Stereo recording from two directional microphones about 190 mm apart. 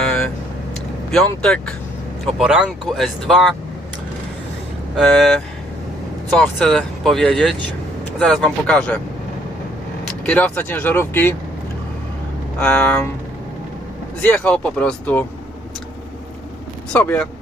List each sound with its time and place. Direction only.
1.1 s speech: 5° left (ahead or behind)
4.9 s speech: centre (ahead or behind)
10.2 s speech: 5° left (ahead or behind)
12.5 s speech: 5° left (ahead or behind)
14.2 s speech: 5° left (ahead or behind)
16.9 s speech: 5° left (ahead or behind)